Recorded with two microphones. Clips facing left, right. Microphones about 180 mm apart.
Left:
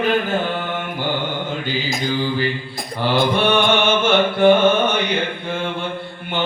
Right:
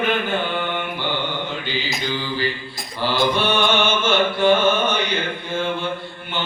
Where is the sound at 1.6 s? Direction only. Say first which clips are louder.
Left 3 dB; 50° left (ahead or behind).